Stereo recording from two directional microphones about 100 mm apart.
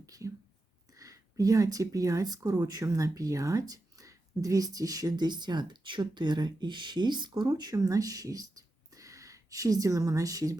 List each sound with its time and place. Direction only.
0.0 s whispering: 35° right (ahead or behind)
0.9 s speech: 35° right (ahead or behind)